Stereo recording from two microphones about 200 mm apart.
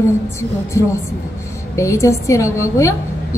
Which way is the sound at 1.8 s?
15° left (ahead or behind).